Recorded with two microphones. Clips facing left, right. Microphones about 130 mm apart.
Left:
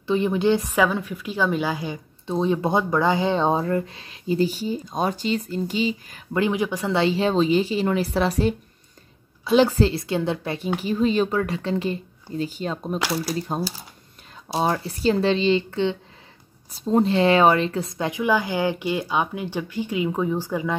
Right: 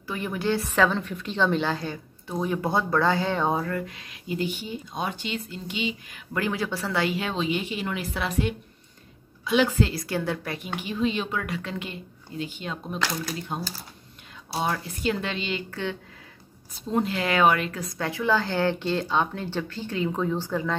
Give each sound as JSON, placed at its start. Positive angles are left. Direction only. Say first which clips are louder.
{"t": 0.0, "sound": "speech", "louder": "left 8 dB", "side_deg": 20}
{"t": 2.2, "sound": "speech", "louder": "left 5 dB", "side_deg": 25}
{"t": 6.3, "sound": "a woman's voice", "louder": "left 5 dB", "side_deg": 20}
{"t": 10.8, "sound": "speech", "louder": "left 6 dB", "side_deg": 40}
{"t": 13.6, "sound": "speech", "louder": "left 7 dB", "side_deg": 10}
{"t": 14.6, "sound": "speech", "louder": "left 5 dB", "side_deg": 35}
{"t": 16.7, "sound": "speech", "louder": "left 7 dB", "side_deg": 35}